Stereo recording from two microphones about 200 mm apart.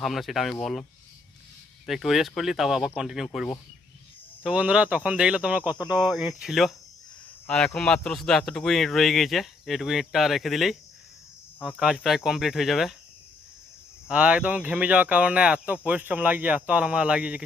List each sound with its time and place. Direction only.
0.0 s speech: centre (ahead or behind)
1.9 s speech: centre (ahead or behind)
5.8 s speech: 20° left (ahead or behind)
6.1 s speech: centre (ahead or behind)
11.8 s speech: 5° right (ahead or behind)
14.1 s speech: 5° right (ahead or behind)